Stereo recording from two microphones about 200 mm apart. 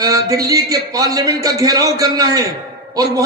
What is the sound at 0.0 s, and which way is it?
A man's voice, 20° right (ahead or behind).